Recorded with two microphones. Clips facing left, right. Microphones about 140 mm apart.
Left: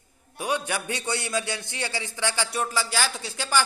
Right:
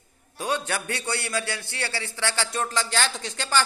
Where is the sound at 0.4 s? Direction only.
10° left (ahead or behind).